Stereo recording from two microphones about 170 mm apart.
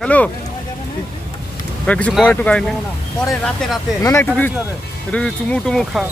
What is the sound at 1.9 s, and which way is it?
Speech, 5° left (ahead or behind).